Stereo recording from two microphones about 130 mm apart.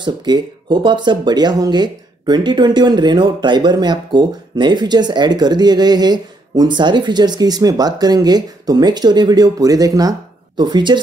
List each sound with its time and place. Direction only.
0.0 s speech: 35° right (ahead or behind)